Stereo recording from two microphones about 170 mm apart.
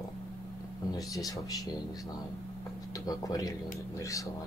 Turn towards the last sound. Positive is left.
turn(degrees=20)  # may be behind; listen again after turning